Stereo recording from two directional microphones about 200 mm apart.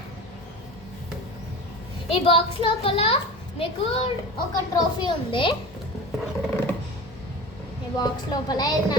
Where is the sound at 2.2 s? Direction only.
30° left (ahead or behind).